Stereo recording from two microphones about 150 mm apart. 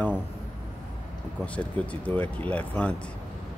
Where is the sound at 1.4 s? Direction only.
10° left (ahead or behind).